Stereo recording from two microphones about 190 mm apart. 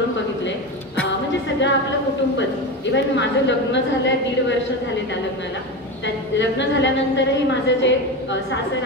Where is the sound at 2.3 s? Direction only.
70° left (ahead or behind).